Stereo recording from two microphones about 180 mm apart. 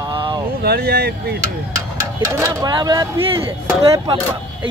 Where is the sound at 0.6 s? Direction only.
60° right (ahead or behind).